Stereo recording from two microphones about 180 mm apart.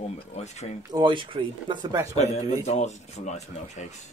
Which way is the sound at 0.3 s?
40° left (ahead or behind).